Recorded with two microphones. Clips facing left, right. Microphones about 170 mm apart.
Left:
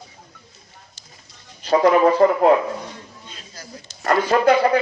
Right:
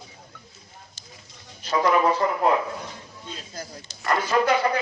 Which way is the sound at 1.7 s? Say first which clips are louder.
Left 6 dB; 45° left (ahead or behind).